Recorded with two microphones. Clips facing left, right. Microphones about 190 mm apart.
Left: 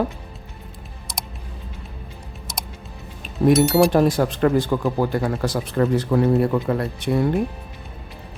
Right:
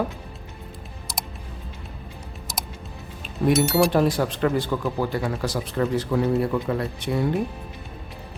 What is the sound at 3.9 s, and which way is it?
Speech, 45° left (ahead or behind).